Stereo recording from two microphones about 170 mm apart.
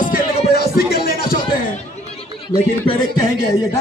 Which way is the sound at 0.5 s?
65° left (ahead or behind).